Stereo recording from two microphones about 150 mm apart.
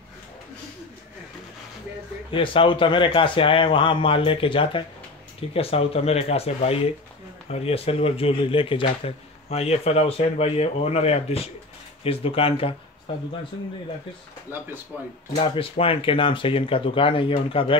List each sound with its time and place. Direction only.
2.3 s speech: 35° left (ahead or behind)
14.5 s speech: 15° right (ahead or behind)
15.3 s speech: 35° left (ahead or behind)